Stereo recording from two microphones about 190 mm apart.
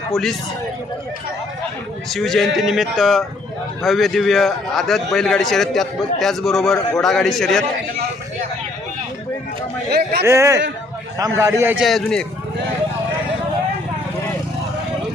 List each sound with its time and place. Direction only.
0.1 s a man's voice: centre (ahead or behind)
2.0 s a man's voice: centre (ahead or behind)
9.9 s a man's voice: 55° right (ahead or behind)
10.2 s a man's voice: 15° right (ahead or behind); by 12.2 s centre (ahead or behind)